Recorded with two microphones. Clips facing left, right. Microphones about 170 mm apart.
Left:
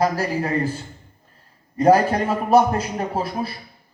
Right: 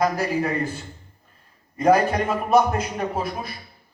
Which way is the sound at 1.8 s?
30° left (ahead or behind).